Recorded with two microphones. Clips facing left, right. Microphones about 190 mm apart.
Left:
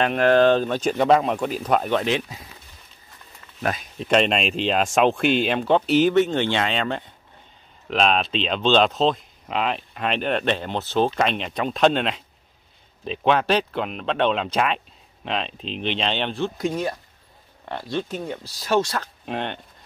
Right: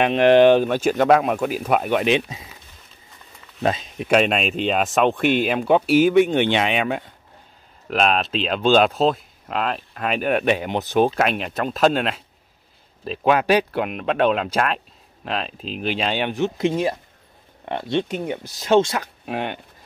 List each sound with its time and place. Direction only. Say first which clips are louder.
0.0 s speech: right 3 dB; 20° right (ahead or behind)
3.6 s speech: right 4 dB; 20° right (ahead or behind)
19.2 s speech: right 1 dB; 5° right (ahead or behind)